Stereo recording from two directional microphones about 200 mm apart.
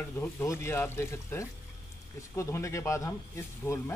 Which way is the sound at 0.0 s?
10° left (ahead or behind).